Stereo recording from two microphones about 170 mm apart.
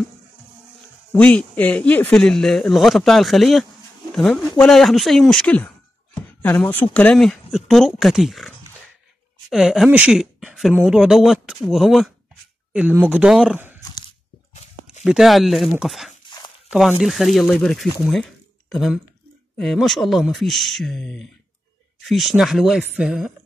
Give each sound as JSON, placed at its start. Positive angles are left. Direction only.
{"t": 1.1, "sound": "speech", "side_deg": 10}
{"t": 15.0, "sound": "speech", "side_deg": 0}
{"t": 16.3, "sound": "zipper", "side_deg": 30}
{"t": 16.7, "sound": "speech", "side_deg": 0}